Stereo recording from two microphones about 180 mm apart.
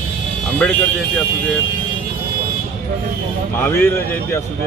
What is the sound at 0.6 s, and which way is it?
Speech, 5° left (ahead or behind).